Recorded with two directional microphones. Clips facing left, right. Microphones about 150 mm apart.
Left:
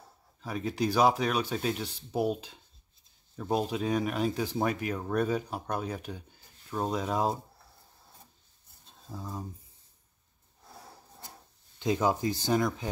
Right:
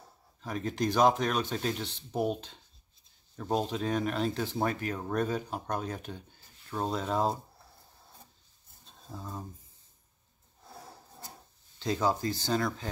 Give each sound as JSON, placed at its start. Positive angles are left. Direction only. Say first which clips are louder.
{"t": 0.4, "sound": "speech", "louder": "left 1 dB", "side_deg": 5}
{"t": 9.1, "sound": "speech", "louder": "left 2 dB", "side_deg": 10}
{"t": 11.8, "sound": "speech", "louder": "left 2 dB", "side_deg": 15}